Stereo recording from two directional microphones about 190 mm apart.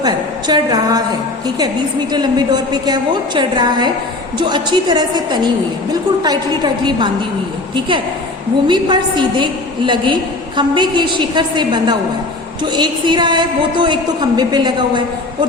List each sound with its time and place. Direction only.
0.0 s a woman's voice: 20° right (ahead or behind)
2.1 s a woman's voice: 20° right (ahead or behind)
8.6 s a woman's voice: 25° right (ahead or behind)